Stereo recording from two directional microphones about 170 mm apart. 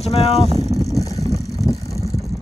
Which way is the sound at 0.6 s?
20° right (ahead or behind).